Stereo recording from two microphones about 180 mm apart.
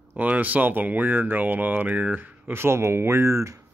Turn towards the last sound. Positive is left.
turn(degrees=-15)  # may be behind; listen again after turning